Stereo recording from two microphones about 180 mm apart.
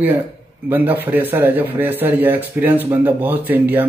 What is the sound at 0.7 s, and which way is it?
A man's voice, 10° right (ahead or behind).